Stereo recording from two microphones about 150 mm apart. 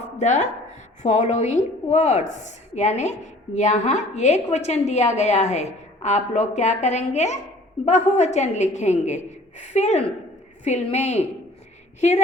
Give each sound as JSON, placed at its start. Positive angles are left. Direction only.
{"t": 0.2, "sound": "a woman's voice", "side_deg": 50}